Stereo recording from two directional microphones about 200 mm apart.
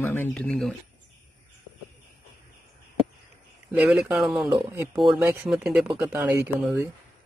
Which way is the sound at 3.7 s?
5° right (ahead or behind).